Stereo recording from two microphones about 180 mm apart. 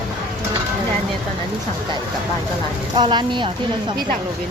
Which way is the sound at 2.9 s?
25° right (ahead or behind).